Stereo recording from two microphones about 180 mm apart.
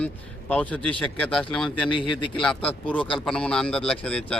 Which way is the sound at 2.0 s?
30° left (ahead or behind).